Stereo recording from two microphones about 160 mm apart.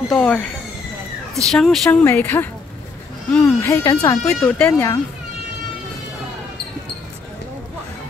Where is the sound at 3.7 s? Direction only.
20° left (ahead or behind).